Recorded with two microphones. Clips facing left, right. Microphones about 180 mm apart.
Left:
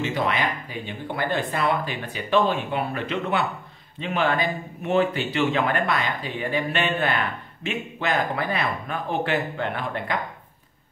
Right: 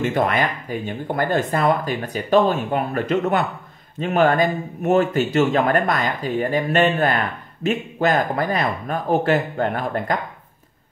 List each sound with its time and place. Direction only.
0.0 s speech: 50° right (ahead or behind)